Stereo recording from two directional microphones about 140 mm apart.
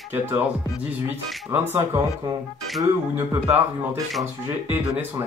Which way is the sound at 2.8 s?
20° right (ahead or behind).